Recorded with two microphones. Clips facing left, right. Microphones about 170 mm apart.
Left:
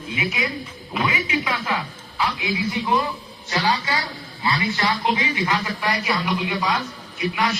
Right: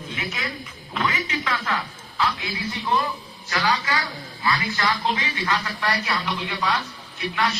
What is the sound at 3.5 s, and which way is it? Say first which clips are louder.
A man's voice: left 1 dB; 25° left (ahead or behind).